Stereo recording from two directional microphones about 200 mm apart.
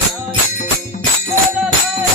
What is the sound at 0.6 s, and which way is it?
Music, 35° left (ahead or behind).